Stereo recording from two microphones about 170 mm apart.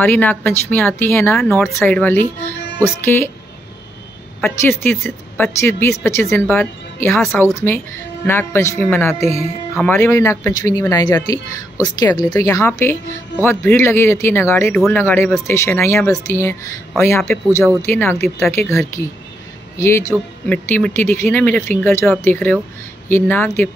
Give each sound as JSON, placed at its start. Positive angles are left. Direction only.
{"t": 0.0, "sound": "speech", "side_deg": 10}
{"t": 4.4, "sound": "speech", "side_deg": 10}
{"t": 8.7, "sound": "a woman's voice", "side_deg": 5}